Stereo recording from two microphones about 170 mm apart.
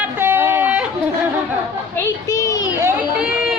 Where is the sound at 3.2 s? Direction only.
5° right (ahead or behind).